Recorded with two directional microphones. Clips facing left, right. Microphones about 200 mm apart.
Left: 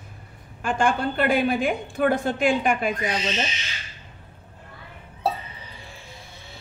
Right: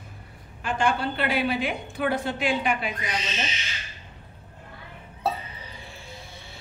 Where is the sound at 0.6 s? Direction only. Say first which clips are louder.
Left 2 dB; 50° left (ahead or behind).